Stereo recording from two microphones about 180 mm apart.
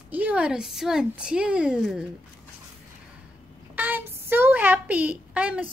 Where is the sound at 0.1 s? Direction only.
5° right (ahead or behind).